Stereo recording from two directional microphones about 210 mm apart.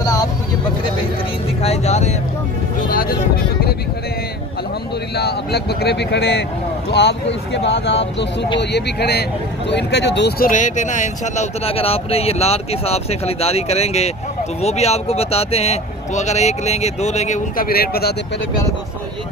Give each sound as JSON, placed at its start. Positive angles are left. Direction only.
{"t": 0.0, "sound": "vehicle", "side_deg": 15}
{"t": 1.6, "sound": "vehicle", "side_deg": 30}
{"t": 2.9, "sound": "music", "side_deg": 45}
{"t": 5.1, "sound": "speech", "side_deg": 50}
{"t": 10.5, "sound": "speech", "side_deg": 35}